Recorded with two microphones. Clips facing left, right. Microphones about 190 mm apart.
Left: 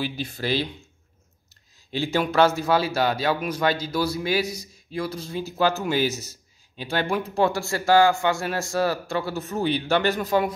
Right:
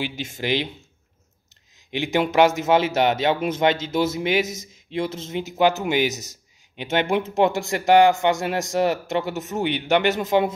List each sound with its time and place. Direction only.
0.3 s speech: 15° right (ahead or behind)
1.9 s speech: 20° right (ahead or behind)